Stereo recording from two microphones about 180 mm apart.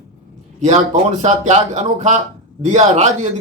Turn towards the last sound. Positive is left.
turn(degrees=-40)  # may be behind; listen again after turning